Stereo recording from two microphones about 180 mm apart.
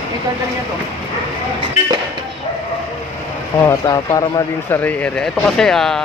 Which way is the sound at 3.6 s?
20° left (ahead or behind).